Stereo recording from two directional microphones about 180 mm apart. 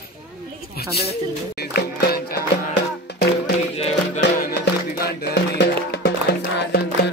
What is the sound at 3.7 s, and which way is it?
Music, 35° left (ahead or behind).